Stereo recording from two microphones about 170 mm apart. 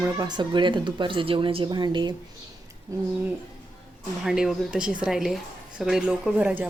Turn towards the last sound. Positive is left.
turn(degrees=-10)  # may be behind; listen again after turning